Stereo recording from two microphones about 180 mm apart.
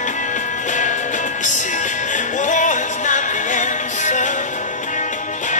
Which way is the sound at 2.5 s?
45° left (ahead or behind).